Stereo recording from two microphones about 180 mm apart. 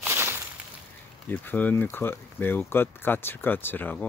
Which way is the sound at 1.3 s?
10° left (ahead or behind).